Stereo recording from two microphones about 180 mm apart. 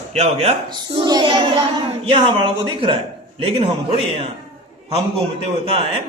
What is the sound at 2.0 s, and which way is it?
Speech, 30° right (ahead or behind).